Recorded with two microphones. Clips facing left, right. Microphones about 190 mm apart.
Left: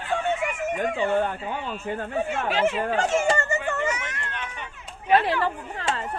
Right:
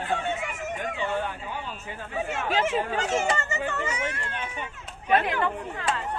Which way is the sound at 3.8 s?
30° right (ahead or behind).